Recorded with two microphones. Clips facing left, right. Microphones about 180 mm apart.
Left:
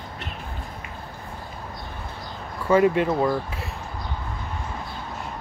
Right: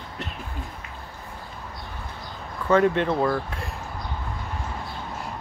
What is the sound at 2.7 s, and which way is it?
Speech, 10° left (ahead or behind).